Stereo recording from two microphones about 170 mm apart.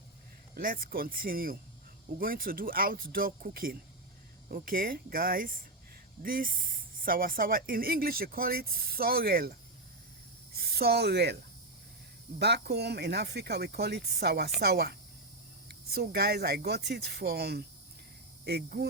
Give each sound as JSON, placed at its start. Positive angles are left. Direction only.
{"t": 0.5, "sound": "speech", "side_deg": -55}
{"t": 10.6, "sound": "speech", "side_deg": -65}
{"t": 12.4, "sound": "speech", "side_deg": -75}
{"t": 16.0, "sound": "speech", "side_deg": -70}